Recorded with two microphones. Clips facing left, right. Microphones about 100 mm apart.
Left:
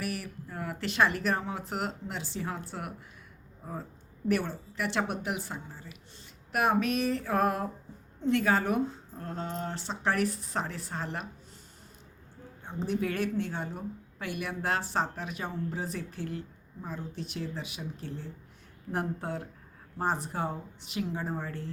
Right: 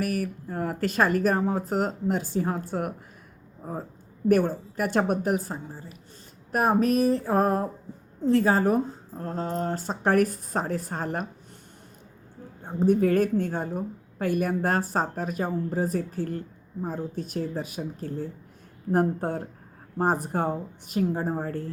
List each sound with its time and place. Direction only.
0.0 s a woman's voice: 45° right (ahead or behind)
3.6 s a sound: 40° right (ahead or behind)
4.3 s a woman's voice: 45° right (ahead or behind)
6.5 s a sound: 40° right (ahead or behind)
8.2 s a woman's voice: 35° right (ahead or behind)
12.6 s a woman's voice: 45° right (ahead or behind)